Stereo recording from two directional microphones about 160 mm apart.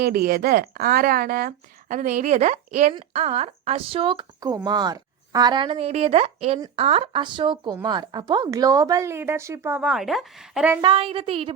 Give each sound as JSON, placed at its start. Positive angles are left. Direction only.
{"t": 0.0, "sound": "speech", "side_deg": -70}
{"t": 10.8, "sound": "speech", "side_deg": -30}